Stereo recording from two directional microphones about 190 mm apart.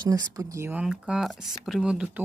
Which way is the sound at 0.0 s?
20° right (ahead or behind).